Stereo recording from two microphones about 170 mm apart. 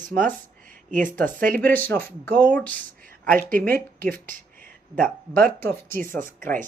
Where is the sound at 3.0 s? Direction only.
55° right (ahead or behind).